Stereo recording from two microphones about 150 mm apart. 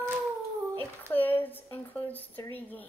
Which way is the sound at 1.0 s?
15° left (ahead or behind).